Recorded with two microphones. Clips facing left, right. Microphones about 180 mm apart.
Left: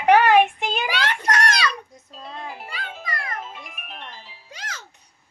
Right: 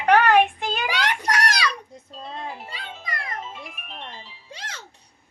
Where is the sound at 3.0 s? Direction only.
20° right (ahead or behind).